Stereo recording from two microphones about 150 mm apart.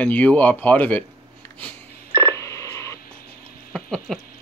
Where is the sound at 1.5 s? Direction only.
15° left (ahead or behind).